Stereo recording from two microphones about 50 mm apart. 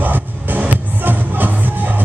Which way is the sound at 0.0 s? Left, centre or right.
Right.